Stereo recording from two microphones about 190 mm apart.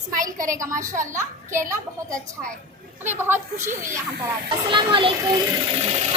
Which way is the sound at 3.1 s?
10° right (ahead or behind).